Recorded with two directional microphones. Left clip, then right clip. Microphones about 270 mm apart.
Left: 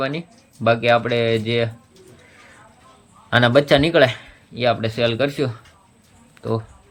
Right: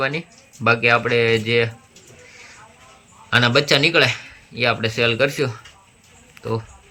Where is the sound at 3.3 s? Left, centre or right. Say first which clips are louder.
Left 1 dB; centre.